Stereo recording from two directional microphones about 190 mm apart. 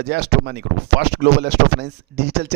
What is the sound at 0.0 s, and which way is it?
Speech, 60° right (ahead or behind).